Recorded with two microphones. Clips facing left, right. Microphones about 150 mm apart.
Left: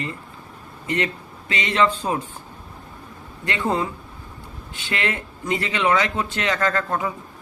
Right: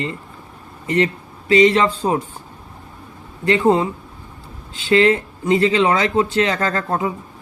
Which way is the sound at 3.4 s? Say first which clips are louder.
Right 8 dB; 25° right (ahead or behind).